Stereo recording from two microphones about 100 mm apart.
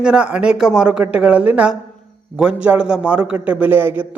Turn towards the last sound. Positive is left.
turn(degrees=-20)  # may be behind; listen again after turning